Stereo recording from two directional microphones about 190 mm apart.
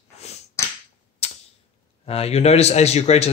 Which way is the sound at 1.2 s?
35° left (ahead or behind).